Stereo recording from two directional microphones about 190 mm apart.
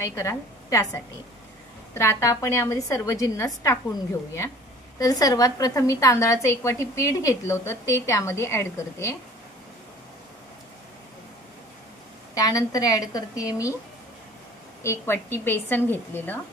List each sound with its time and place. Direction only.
0.0 s a woman's voice: 15° left (ahead or behind)
4.9 s a woman's voice: 20° left (ahead or behind)
12.4 s a woman's voice: 20° left (ahead or behind)
14.8 s a woman's voice: 15° left (ahead or behind)